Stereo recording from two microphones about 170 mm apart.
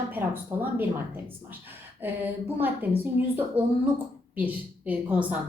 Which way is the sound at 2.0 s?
10° right (ahead or behind).